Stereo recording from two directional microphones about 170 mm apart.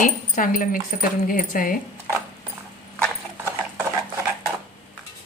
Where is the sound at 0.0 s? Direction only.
55° left (ahead or behind).